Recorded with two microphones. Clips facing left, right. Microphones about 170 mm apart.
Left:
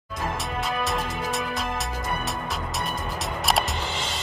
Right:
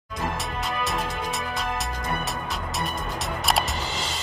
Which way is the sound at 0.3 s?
Centre (ahead or behind).